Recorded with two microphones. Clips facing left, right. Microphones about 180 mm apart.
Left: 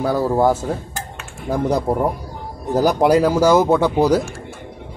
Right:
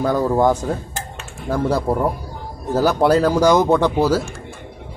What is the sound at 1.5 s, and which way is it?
A man's voice, 20° left (ahead or behind).